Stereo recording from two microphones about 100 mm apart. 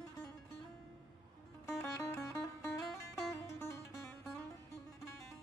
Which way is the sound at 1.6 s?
30° left (ahead or behind).